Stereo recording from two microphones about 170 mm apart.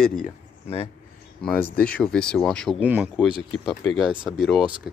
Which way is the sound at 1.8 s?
5° left (ahead or behind).